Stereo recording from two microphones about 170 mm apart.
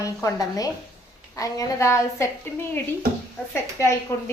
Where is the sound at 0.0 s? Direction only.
20° left (ahead or behind).